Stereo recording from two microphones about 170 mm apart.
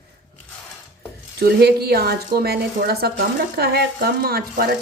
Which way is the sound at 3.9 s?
65° right (ahead or behind).